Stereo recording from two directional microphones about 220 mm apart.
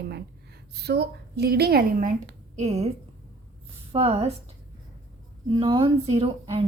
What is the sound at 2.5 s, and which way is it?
Speech, 30° right (ahead or behind).